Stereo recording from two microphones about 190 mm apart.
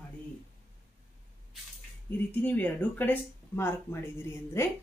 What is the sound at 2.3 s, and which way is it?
Speech, 10° left (ahead or behind).